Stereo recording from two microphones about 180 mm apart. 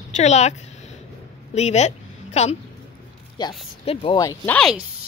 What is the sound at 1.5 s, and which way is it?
A woman's voice, 40° left (ahead or behind).